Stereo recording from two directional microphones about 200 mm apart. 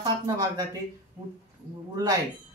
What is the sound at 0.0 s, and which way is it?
Speech, 20° right (ahead or behind).